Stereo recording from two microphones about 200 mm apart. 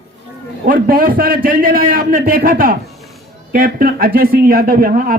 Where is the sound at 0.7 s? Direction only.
45° right (ahead or behind).